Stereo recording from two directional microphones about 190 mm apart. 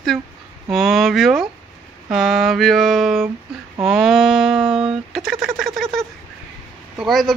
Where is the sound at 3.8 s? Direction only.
Centre (ahead or behind).